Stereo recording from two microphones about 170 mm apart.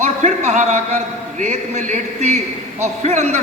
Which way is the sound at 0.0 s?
45° right (ahead or behind).